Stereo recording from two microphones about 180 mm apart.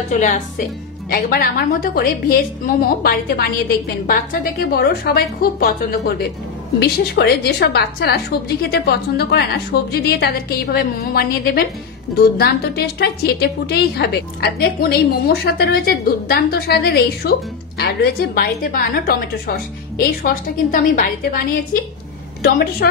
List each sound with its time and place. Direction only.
0.1 s a woman's voice: 45° left (ahead or behind)
1.1 s a woman's voice: 55° left (ahead or behind)